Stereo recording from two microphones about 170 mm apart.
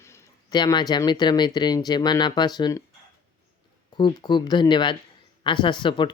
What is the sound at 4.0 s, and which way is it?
Speech, 25° left (ahead or behind).